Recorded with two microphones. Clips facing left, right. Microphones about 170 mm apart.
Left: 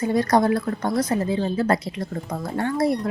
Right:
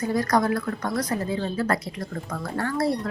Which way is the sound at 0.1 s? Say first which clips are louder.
Left 4 dB; 25° left (ahead or behind).